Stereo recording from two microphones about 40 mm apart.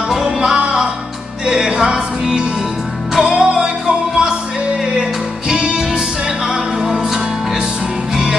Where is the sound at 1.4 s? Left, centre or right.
Centre.